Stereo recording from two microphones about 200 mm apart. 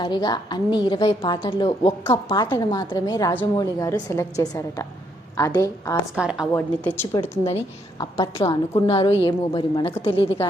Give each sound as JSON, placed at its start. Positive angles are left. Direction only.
{"t": 0.0, "sound": "a woman's voice", "side_deg": 20}
{"t": 6.1, "sound": "a woman's voice", "side_deg": -5}
{"t": 6.5, "sound": "a woman's voice", "side_deg": 10}